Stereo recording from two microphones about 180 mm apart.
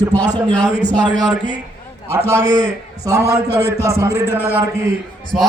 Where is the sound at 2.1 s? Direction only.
15° right (ahead or behind).